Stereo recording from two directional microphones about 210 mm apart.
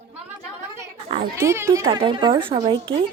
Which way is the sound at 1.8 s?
25° right (ahead or behind).